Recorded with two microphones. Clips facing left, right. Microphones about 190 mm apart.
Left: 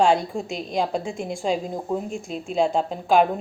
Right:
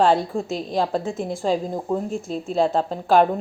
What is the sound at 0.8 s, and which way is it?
Speech, 15° left (ahead or behind).